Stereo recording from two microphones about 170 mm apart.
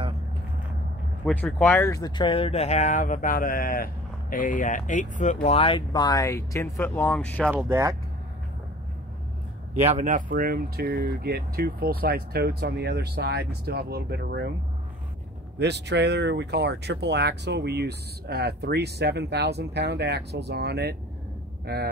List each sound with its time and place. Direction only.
1.2 s speech: 10° left (ahead or behind)
7.5 s speech: 20° right (ahead or behind)
9.8 s speech: 45° right (ahead or behind); by 14.5 s 70° right (ahead or behind)
15.6 s speech: 85° right